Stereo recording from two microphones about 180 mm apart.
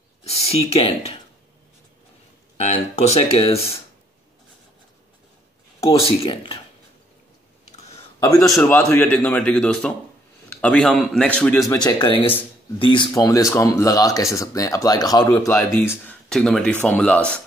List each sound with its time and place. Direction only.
0.2 s speech: 35° left (ahead or behind)
3.0 s speech: 35° left (ahead or behind)
5.8 s speech: 30° left (ahead or behind)
8.5 s speech: 15° left (ahead or behind)
11.7 s speech: 25° left (ahead or behind)
16.3 s speech: 5° left (ahead or behind)